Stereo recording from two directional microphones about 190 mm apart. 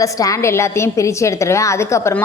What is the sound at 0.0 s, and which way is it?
A woman's voice, 15° left (ahead or behind).